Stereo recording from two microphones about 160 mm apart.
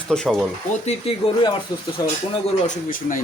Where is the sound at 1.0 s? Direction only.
30° left (ahead or behind).